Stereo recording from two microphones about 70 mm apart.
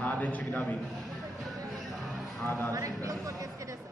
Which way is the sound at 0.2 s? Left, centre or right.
Left.